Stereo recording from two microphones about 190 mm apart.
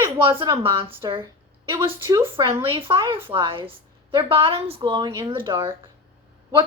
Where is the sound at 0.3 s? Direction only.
25° right (ahead or behind).